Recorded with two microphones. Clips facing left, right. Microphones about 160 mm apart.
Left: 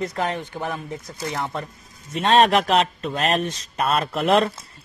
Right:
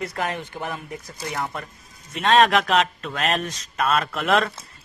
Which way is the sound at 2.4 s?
35° left (ahead or behind).